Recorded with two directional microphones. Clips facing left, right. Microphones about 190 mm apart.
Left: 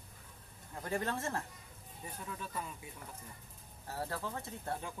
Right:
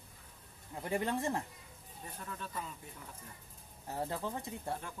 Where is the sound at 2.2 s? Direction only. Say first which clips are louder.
Left 1 dB; 10° left (ahead or behind).